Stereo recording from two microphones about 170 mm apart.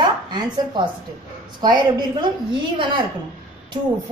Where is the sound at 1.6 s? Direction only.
25° right (ahead or behind).